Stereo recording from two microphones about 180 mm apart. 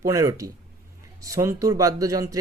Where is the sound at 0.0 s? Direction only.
15° right (ahead or behind).